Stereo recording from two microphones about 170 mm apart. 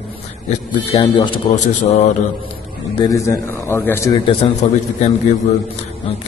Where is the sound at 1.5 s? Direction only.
45° left (ahead or behind).